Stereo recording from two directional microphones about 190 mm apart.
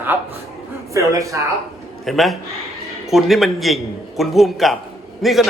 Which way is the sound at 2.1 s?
Centre (ahead or behind).